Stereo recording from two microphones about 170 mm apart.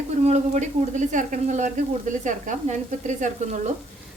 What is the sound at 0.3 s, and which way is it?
Speech, 45° right (ahead or behind).